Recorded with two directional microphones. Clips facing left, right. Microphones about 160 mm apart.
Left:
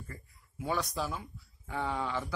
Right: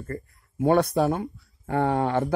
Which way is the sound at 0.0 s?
55° right (ahead or behind).